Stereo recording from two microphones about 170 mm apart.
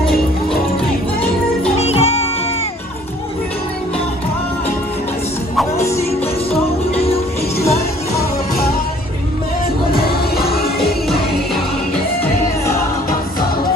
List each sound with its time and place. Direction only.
1.8 s music: 35° left (ahead or behind)
10.3 s music: 65° left (ahead or behind)